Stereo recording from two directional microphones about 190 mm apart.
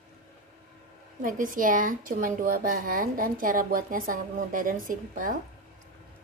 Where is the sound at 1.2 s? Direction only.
45° right (ahead or behind).